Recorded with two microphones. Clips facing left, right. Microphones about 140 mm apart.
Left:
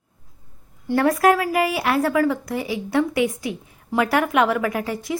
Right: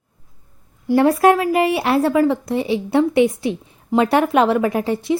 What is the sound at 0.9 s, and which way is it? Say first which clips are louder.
A woman's voice: right 4 dB; 25° right (ahead or behind).